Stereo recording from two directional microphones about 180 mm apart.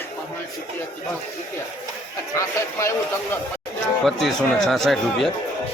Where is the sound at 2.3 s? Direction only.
15° left (ahead or behind).